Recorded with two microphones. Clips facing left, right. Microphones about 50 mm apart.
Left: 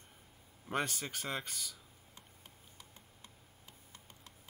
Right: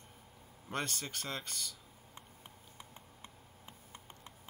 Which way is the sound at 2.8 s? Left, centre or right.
Right.